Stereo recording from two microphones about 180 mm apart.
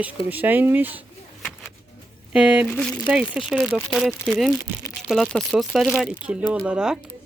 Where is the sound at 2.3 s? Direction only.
5° right (ahead or behind).